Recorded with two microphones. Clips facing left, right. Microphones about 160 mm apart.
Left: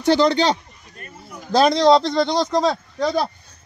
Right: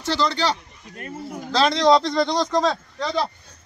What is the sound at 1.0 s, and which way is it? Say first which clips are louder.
Speech: right 7 dB; 90° right.